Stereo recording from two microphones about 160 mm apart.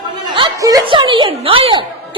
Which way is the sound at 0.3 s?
25° right (ahead or behind).